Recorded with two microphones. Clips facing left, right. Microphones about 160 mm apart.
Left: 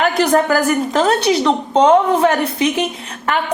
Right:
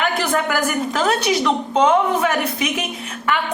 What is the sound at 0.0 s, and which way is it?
A woman's voice, 35° left (ahead or behind).